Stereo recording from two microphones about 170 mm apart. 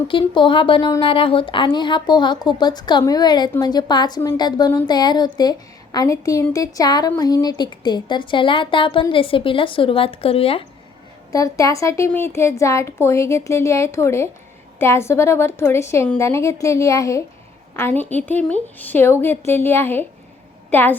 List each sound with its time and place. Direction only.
0.1 s a woman's voice: 30° left (ahead or behind)
11.3 s a woman's voice: 20° left (ahead or behind)